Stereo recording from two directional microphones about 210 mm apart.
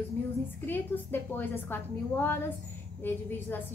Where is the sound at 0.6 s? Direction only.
10° left (ahead or behind).